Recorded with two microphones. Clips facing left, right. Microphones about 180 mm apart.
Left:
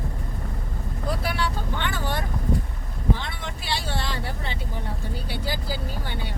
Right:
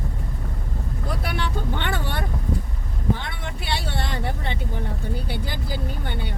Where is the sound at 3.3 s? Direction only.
60° right (ahead or behind).